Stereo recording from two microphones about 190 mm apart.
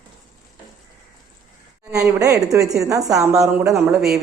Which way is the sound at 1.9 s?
15° right (ahead or behind).